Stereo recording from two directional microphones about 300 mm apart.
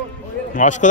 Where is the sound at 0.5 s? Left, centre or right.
Left.